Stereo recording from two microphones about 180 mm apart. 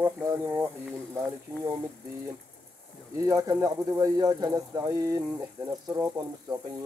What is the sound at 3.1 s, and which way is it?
Speech, 20° right (ahead or behind).